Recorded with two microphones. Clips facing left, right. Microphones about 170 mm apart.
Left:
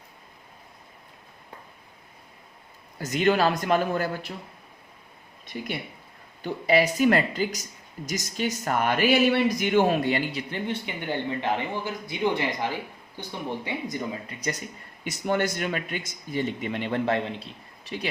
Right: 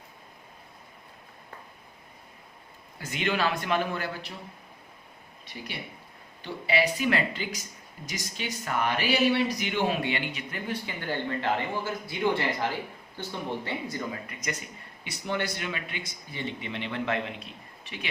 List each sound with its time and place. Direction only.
3.0 s speech: 40° left (ahead or behind)
6.4 s speech: 40° left (ahead or behind)
15.0 s speech: 45° left (ahead or behind)